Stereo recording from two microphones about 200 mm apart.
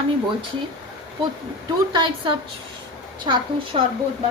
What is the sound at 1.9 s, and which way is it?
A woman's voice, 25° right (ahead or behind).